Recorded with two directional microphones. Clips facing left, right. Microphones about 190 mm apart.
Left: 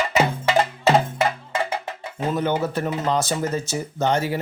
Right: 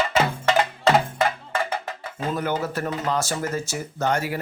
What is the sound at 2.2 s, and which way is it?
Speech, 20° left (ahead or behind).